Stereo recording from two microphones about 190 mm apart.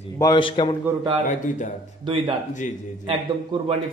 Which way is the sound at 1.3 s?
40° left (ahead or behind).